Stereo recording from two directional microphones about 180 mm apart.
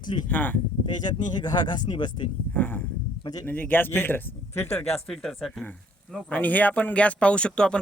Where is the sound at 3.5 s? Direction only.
10° left (ahead or behind).